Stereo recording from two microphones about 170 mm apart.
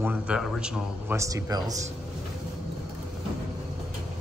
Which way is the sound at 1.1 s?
20° right (ahead or behind).